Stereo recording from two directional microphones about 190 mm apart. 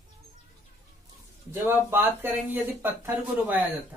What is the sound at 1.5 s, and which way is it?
Speech, 10° right (ahead or behind).